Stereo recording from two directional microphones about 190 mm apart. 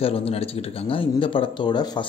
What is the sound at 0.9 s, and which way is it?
Speech, 25° left (ahead or behind).